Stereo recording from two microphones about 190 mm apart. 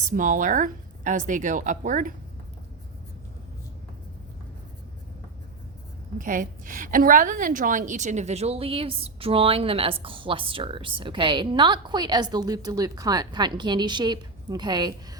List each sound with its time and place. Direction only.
0.1 s speech: 45° right (ahead or behind)
6.1 s a woman's voice: 45° right (ahead or behind); by 15.2 s 20° right (ahead or behind)